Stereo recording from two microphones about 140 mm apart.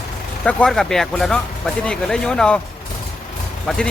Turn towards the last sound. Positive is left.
turn(degrees=5)  # may be behind; listen again after turning